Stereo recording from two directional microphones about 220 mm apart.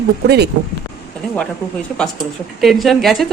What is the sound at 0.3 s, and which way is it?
Speech, 50° right (ahead or behind).